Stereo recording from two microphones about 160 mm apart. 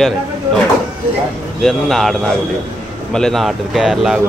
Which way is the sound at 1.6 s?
Centre (ahead or behind).